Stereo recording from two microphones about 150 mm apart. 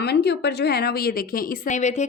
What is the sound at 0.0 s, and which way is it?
A woman's voice, 90° left.